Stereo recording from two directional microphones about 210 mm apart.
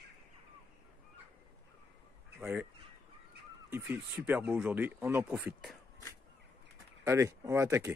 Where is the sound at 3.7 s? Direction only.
10° right (ahead or behind).